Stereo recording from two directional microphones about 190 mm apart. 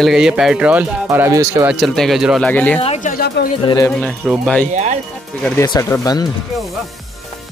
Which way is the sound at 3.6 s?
20° left (ahead or behind).